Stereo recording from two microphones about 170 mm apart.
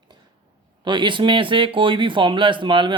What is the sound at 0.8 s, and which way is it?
A man's voice, 25° right (ahead or behind).